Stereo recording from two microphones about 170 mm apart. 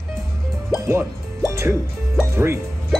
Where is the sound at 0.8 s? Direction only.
15° right (ahead or behind).